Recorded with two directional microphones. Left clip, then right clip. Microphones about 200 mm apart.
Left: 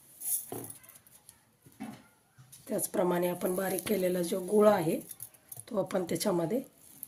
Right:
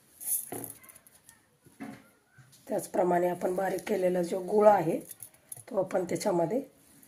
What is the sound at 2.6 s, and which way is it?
A woman's voice, 30° left (ahead or behind).